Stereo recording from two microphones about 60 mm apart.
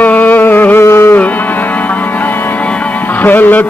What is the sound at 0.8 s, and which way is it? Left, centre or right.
Music, left.